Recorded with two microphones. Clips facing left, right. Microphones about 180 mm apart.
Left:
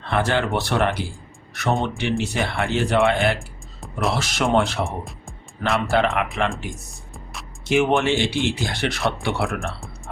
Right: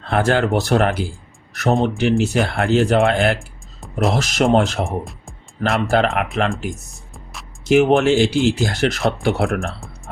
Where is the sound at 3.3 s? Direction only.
Centre (ahead or behind).